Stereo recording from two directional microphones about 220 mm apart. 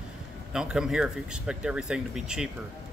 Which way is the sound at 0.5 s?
5° right (ahead or behind).